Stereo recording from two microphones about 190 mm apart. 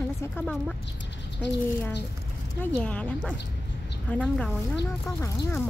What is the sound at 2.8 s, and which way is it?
Speech, 5° left (ahead or behind).